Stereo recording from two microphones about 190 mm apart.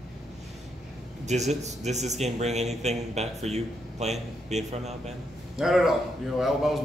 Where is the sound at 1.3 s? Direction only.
35° right (ahead or behind).